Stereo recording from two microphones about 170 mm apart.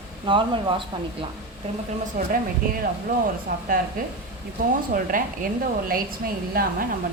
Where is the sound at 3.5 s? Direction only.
55° right (ahead or behind).